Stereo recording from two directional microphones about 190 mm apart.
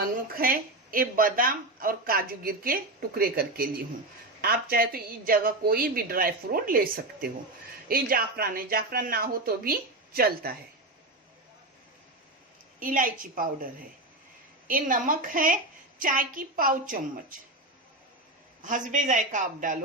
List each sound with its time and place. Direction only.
0.0 s a woman's voice: 50° right (ahead or behind)
12.8 s a woman's voice: 45° right (ahead or behind)
14.7 s a woman's voice: 45° right (ahead or behind)
18.6 s a woman's voice: 45° right (ahead or behind)